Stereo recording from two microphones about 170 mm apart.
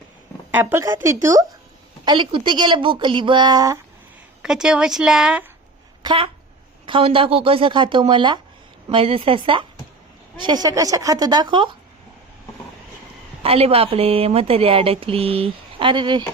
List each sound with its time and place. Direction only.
0.5 s a woman's voice: 15° right (ahead or behind)
2.0 s a woman's voice: 30° right (ahead or behind)
4.4 s speech: 5° right (ahead or behind)
6.0 s a woman's voice: 30° right (ahead or behind)
13.4 s a woman's voice: 35° right (ahead or behind)